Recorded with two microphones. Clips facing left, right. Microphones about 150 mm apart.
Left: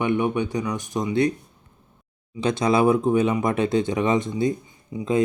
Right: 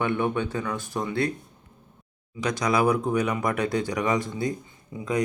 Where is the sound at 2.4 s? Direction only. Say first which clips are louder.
Left 4 dB; 25° left (ahead or behind).